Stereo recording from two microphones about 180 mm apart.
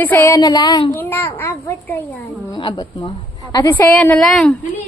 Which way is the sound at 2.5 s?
25° left (ahead or behind).